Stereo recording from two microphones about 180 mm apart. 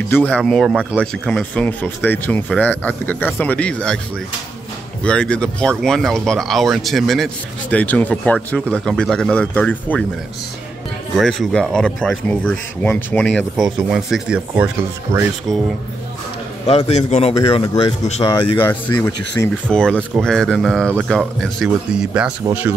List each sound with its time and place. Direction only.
0.1 s speech: 10° left (ahead or behind)
0.4 s speech: centre (ahead or behind)
5.0 s speech: 5° left (ahead or behind)
11.1 s speech: centre (ahead or behind); by 15.3 s 15° right (ahead or behind)
16.6 s a man's voice: 35° left (ahead or behind)
18.2 s speech: 25° left (ahead or behind)
18.7 s speech: 10° left (ahead or behind); by 22.7 s 10° right (ahead or behind)